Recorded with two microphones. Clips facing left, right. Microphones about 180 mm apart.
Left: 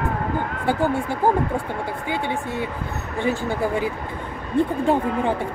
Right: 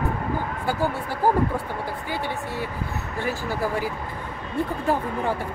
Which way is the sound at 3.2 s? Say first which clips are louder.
Left 4 dB; 25° left (ahead or behind).